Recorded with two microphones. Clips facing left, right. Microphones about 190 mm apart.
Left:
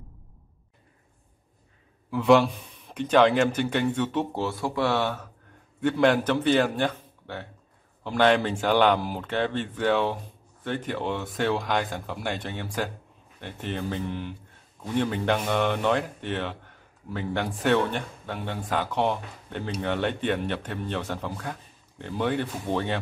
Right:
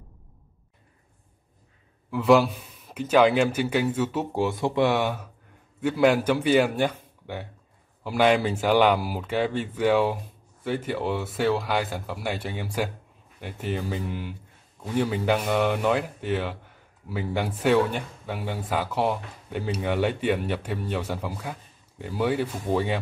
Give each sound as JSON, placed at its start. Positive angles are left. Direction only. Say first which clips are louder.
{"t": 2.0, "sound": "a man's voice", "louder": "even", "side_deg": 0}